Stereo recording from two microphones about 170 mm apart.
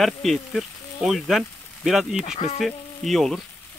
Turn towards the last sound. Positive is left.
turn(degrees=0)  # may be behind; listen again after turning